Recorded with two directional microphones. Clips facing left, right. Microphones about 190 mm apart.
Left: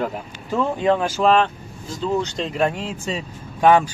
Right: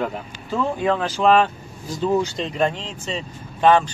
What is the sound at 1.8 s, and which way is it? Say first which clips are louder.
Speech: right 2 dB; 15° right (ahead or behind).